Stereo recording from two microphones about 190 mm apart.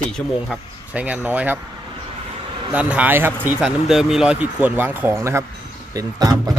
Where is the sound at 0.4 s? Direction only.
5° right (ahead or behind).